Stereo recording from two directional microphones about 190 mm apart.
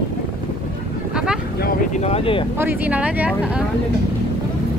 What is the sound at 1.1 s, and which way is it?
Boat, 5° right (ahead or behind).